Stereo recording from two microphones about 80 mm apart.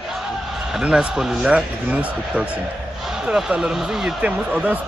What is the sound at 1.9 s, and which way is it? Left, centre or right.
Speech, centre.